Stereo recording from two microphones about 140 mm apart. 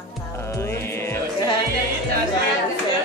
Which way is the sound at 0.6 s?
20° left (ahead or behind).